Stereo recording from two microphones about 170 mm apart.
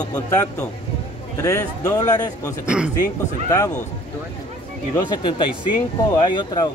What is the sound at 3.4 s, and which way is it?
Speech, 20° left (ahead or behind).